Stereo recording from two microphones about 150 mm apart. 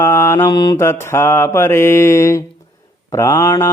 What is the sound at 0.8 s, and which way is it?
Mantra, 20° left (ahead or behind).